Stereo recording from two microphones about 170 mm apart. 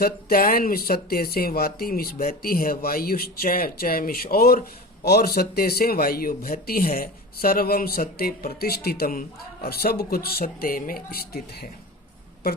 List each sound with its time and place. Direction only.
0.0 s speech: 60° left (ahead or behind)